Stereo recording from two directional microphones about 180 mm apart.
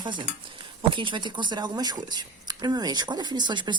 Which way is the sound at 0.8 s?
25° right (ahead or behind).